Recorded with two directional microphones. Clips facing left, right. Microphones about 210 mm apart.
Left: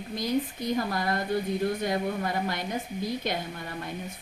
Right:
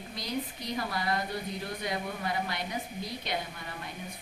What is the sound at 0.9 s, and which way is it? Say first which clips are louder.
A woman's voice: left 4 dB; 50° left (ahead or behind).